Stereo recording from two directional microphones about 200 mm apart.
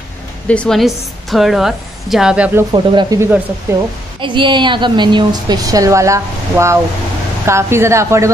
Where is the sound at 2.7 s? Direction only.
25° right (ahead or behind).